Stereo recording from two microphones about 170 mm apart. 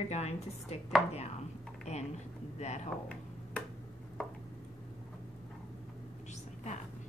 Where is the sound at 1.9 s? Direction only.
40° left (ahead or behind).